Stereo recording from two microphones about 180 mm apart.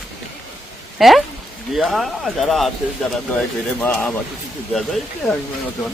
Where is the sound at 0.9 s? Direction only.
Centre (ahead or behind).